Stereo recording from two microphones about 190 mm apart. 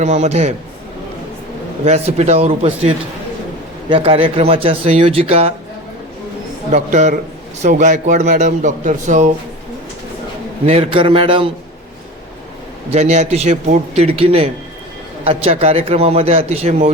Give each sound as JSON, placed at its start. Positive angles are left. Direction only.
{"t": 0.0, "sound": "a man's voice", "side_deg": -35}
{"t": 1.8, "sound": "a man's voice", "side_deg": -35}
{"t": 6.7, "sound": "a man's voice", "side_deg": -40}
{"t": 10.7, "sound": "a man's voice", "side_deg": -30}
{"t": 12.9, "sound": "a man's voice", "side_deg": -35}